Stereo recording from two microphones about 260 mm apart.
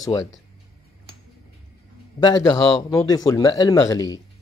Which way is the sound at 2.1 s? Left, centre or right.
Centre.